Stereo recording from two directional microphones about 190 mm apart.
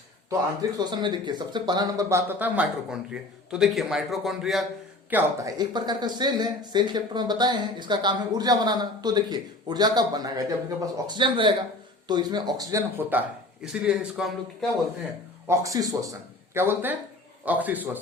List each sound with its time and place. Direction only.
0.8 s speech: 25° right (ahead or behind); by 4.6 s centre (ahead or behind)
5.1 s speech: 20° right (ahead or behind); by 14.7 s centre (ahead or behind)
15.4 s speech: 15° right (ahead or behind)